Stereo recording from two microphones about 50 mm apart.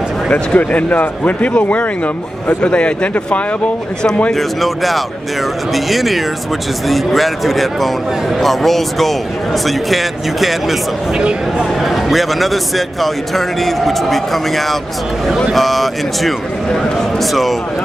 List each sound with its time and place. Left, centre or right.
0.3 s speech: left
4.4 s a man's voice: centre
11.1 s speech: centre
11.8 s a man's voice: centre